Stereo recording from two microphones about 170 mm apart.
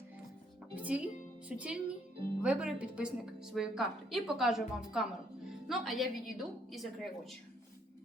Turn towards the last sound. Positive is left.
turn(degrees=0)  # may be behind; listen again after turning